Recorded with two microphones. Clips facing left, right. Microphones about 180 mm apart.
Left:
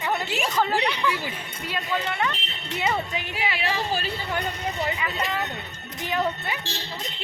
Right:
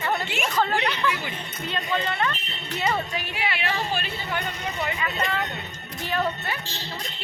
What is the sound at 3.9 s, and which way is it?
Speech, 35° left (ahead or behind).